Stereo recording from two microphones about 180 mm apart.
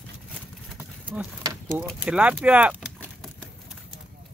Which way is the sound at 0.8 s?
10° right (ahead or behind).